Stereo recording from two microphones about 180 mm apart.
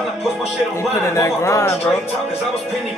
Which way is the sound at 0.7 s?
15° left (ahead or behind).